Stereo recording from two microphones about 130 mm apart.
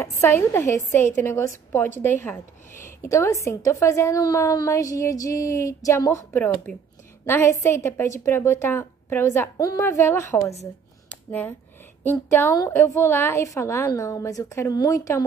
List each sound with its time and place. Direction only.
0.2 s speech: 20° left (ahead or behind)
11.1 s a sound: 15° left (ahead or behind)
12.0 s a woman's voice: 15° left (ahead or behind)